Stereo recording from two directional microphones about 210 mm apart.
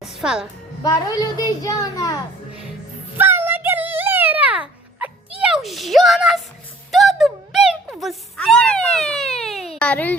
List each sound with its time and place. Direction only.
0.0 s music: centre (ahead or behind)
0.8 s a child's voice: 15° left (ahead or behind)
3.2 s a sound: 10° right (ahead or behind)
6.9 s music: centre (ahead or behind)
9.4 s baby cry: centre (ahead or behind)
9.7 s a sound: 5° left (ahead or behind)